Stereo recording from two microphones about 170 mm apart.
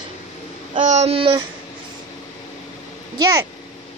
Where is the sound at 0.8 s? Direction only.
40° right (ahead or behind).